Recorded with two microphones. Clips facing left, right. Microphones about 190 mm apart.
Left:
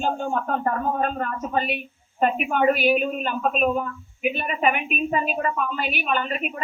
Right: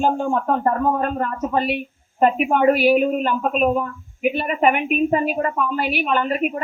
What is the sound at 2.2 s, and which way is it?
A woman's voice, 50° right (ahead or behind).